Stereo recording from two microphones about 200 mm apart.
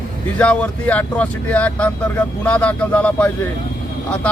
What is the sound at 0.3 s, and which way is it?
Speech, 5° left (ahead or behind).